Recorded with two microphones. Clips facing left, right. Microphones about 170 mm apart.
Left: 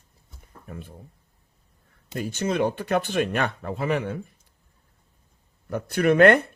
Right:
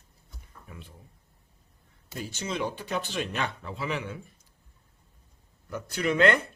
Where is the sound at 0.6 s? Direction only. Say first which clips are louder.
Left 8 dB; 50° left (ahead or behind).